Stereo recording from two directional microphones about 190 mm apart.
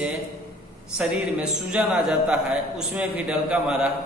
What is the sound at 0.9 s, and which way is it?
A man's voice, 5° right (ahead or behind).